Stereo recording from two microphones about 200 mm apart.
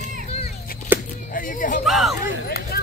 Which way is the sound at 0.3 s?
30° left (ahead or behind).